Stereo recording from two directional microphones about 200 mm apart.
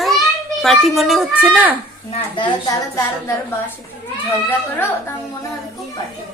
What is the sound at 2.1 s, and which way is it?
Speech, 25° left (ahead or behind).